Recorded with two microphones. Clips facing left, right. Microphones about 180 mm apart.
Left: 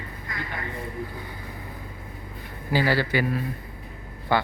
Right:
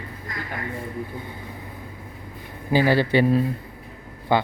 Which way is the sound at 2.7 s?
20° right (ahead or behind).